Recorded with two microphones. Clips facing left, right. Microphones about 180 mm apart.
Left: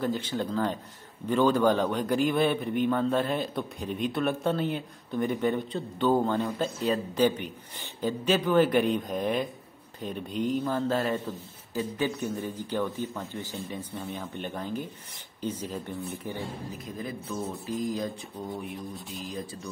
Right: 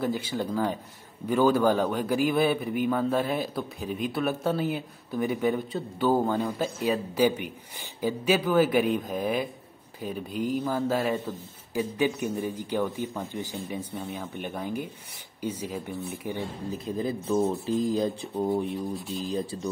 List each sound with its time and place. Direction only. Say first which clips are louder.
0.0 s a man's voice: right 1 dB; 10° right (ahead or behind)
16.3 s speech: right 3 dB; 30° right (ahead or behind)